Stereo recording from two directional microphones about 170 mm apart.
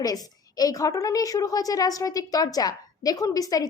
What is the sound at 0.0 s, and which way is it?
A woman's voice, 20° left (ahead or behind).